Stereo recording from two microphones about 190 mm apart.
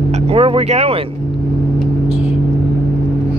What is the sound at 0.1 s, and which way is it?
Speech, 30° right (ahead or behind).